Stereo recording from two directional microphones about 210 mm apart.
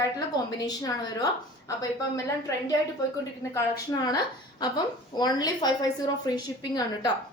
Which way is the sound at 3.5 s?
20° left (ahead or behind).